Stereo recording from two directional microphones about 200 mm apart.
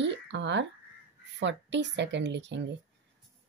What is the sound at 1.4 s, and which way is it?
Speech, 60° right (ahead or behind).